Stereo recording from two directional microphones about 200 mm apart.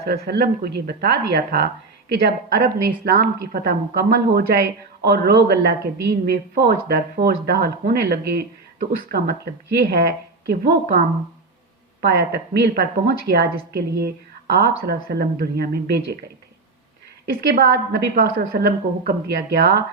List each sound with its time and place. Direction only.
0.0 s a woman's voice: 55° right (ahead or behind)
12.0 s a woman's voice: 55° right (ahead or behind)
17.2 s a woman's voice: 50° right (ahead or behind)